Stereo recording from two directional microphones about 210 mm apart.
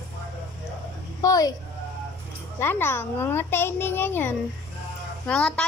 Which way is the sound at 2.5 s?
10° left (ahead or behind).